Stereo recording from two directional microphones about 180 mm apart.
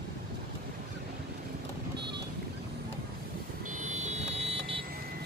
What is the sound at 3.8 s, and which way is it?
Vehicle, 35° right (ahead or behind).